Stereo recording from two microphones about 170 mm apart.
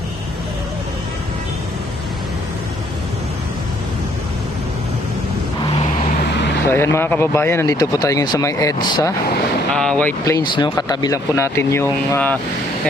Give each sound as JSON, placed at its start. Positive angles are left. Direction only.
{"t": 6.7, "sound": "speech", "side_deg": 15}
{"t": 9.7, "sound": "speech", "side_deg": 5}
{"t": 10.3, "sound": "speech", "side_deg": 25}